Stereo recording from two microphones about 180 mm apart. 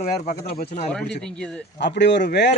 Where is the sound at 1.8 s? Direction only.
75° left (ahead or behind).